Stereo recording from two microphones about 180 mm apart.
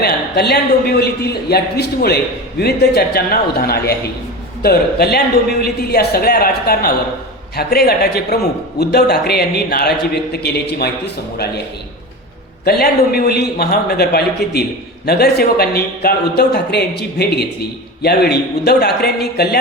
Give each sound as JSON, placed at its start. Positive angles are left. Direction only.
{"t": 0.0, "sound": "a man's voice", "side_deg": 65}
{"t": 12.6, "sound": "a man's voice", "side_deg": 60}